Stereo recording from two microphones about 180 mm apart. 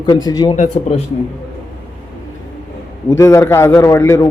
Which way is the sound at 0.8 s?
35° left (ahead or behind).